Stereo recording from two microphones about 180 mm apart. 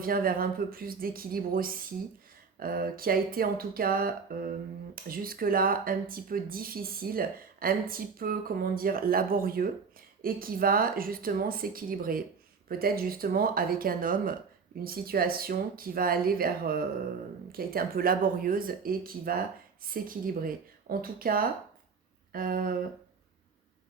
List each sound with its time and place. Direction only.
0.0 s speech: 55° right (ahead or behind)